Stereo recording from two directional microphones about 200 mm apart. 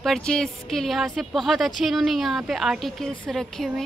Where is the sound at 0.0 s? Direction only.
5° left (ahead or behind).